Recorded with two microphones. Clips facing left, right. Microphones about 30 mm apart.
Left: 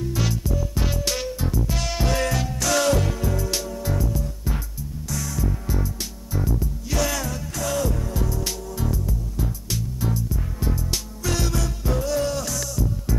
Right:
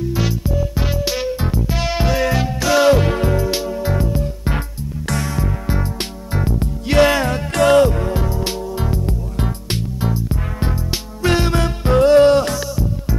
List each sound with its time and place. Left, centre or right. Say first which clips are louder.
0.1 s music: right 5 dB; centre
1.4 s music: right 5 dB; right
9.0 s music: right 6 dB; right
9.9 s music: right 5 dB; right
11.2 s music: right 9 dB; right
12.5 s music: right 5 dB; right